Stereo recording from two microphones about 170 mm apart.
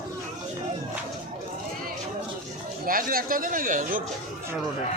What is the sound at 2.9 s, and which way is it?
Speech, 55° right (ahead or behind).